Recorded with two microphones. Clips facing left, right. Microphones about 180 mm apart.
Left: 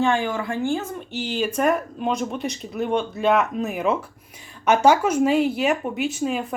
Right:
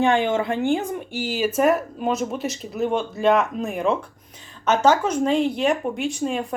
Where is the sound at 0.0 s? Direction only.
20° right (ahead or behind).